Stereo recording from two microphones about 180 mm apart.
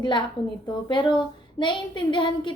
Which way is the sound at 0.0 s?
25° left (ahead or behind).